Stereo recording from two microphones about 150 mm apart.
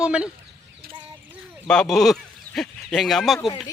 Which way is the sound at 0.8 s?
85° right.